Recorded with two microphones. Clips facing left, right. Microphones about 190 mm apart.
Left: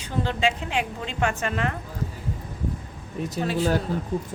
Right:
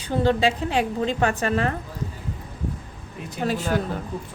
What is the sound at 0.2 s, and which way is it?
A woman's voice, 35° right (ahead or behind).